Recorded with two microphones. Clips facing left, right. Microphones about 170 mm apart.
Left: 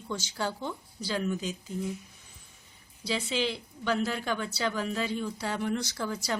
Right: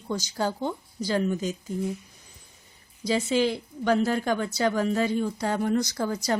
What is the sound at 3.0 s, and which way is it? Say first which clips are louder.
A woman's voice: right 7 dB; 45° right (ahead or behind).